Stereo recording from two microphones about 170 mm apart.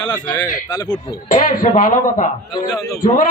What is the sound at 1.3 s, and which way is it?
Speech, 50° left (ahead or behind).